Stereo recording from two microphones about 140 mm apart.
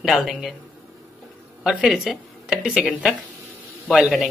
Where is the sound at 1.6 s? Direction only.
5° right (ahead or behind).